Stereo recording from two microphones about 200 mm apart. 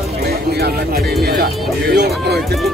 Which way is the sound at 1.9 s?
55° right (ahead or behind).